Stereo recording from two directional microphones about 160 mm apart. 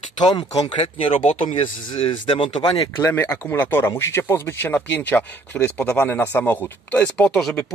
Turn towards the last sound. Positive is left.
turn(degrees=5)  # may be behind; listen again after turning